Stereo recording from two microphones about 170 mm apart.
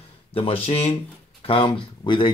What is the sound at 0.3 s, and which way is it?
Speech, 35° left (ahead or behind).